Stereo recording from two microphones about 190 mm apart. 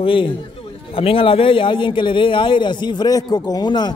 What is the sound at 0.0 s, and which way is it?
A man's voice, 25° left (ahead or behind).